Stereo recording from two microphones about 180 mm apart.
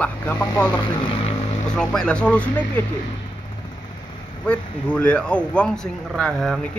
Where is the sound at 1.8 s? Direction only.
5° left (ahead or behind).